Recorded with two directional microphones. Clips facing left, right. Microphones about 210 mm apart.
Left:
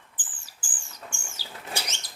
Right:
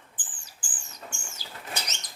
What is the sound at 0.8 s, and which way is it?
Bird flight, 10° left (ahead or behind).